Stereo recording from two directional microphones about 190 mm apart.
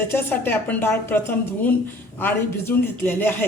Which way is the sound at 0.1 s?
10° left (ahead or behind).